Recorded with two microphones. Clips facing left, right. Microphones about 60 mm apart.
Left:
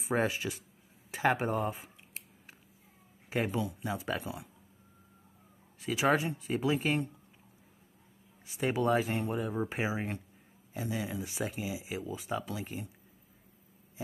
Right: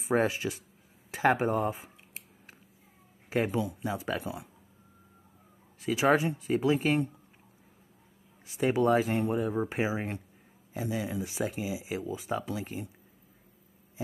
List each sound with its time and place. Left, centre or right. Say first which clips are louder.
0.0 s speech: right 3 dB; centre
3.3 s speech: right 3 dB; centre
5.8 s speech: right 3 dB; centre
8.5 s speech: right 4 dB; centre